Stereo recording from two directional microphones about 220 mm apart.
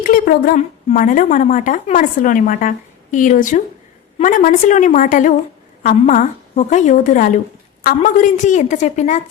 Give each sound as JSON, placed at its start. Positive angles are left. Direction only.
{"t": 0.0, "sound": "speech", "side_deg": 40}